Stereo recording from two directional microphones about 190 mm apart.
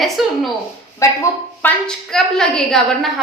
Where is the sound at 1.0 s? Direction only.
15° left (ahead or behind).